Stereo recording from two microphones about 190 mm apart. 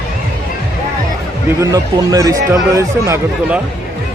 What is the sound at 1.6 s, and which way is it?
Speech, 20° right (ahead or behind).